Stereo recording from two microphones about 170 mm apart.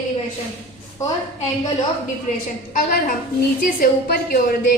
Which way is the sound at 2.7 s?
50° left (ahead or behind).